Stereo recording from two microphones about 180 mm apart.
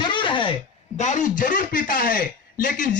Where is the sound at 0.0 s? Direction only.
25° left (ahead or behind).